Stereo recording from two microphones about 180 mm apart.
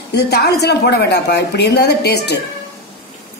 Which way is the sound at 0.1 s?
65° left (ahead or behind).